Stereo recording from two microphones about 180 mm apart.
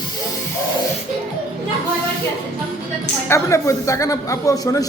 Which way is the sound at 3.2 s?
15° left (ahead or behind).